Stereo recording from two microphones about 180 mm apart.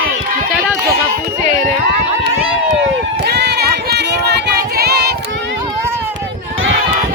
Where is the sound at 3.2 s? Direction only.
65° right (ahead or behind).